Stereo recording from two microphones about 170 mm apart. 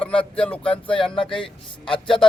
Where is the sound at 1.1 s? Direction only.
30° left (ahead or behind).